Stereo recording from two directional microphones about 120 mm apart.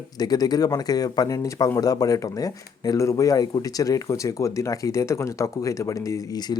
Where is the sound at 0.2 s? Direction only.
35° left (ahead or behind).